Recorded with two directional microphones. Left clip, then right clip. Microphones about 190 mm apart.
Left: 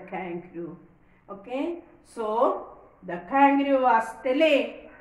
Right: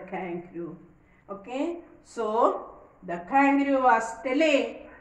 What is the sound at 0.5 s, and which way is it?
Speech, 20° left (ahead or behind).